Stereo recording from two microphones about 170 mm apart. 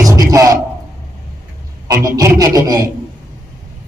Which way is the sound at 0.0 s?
20° right (ahead or behind).